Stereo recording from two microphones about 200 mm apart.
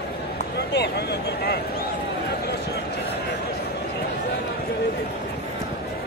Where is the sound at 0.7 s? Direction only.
55° left (ahead or behind).